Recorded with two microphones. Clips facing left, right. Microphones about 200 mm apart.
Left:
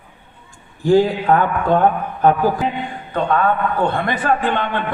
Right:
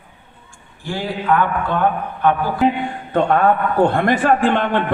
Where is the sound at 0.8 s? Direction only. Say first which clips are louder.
Left 10 dB; 40° left (ahead or behind).